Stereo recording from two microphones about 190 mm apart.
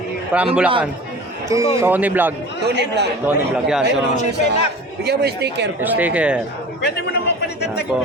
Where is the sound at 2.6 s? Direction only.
60° right (ahead or behind).